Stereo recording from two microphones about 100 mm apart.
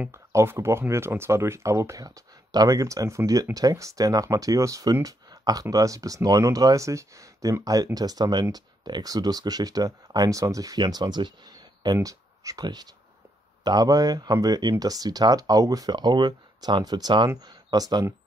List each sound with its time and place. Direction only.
0.1 s speech: 30° right (ahead or behind)